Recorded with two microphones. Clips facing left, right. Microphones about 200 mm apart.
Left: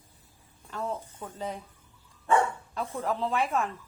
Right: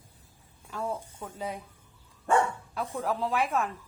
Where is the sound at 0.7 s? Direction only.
10° right (ahead or behind).